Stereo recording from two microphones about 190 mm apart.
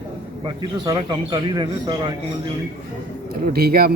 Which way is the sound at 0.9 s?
20° right (ahead or behind).